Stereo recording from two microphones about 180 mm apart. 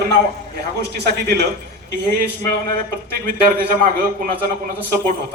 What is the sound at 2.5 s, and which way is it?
A man's voice, 55° right (ahead or behind).